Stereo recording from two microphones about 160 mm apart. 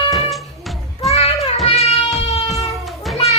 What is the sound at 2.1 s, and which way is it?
Music, centre (ahead or behind).